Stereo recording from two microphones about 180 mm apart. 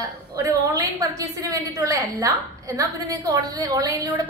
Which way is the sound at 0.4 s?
15° right (ahead or behind).